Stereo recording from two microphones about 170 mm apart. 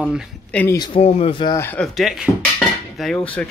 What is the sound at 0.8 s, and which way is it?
Speech, 35° left (ahead or behind).